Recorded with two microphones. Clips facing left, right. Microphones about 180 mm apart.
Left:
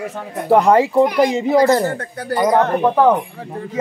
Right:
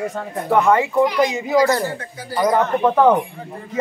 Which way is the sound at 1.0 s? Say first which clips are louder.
Left 3 dB; 50° left (ahead or behind).